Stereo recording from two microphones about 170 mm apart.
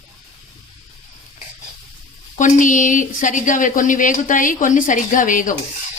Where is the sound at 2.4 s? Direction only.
50° left (ahead or behind).